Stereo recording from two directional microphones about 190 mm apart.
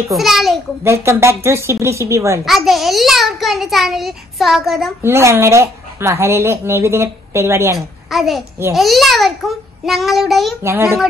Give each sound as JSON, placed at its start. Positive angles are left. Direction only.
{"t": 0.1, "sound": "a child's voice", "side_deg": 0}
{"t": 0.8, "sound": "speech", "side_deg": -15}
{"t": 2.4, "sound": "a child's voice", "side_deg": 0}
{"t": 5.0, "sound": "speech", "side_deg": -15}
{"t": 8.1, "sound": "a child's voice", "side_deg": 0}
{"t": 10.6, "sound": "speech", "side_deg": -15}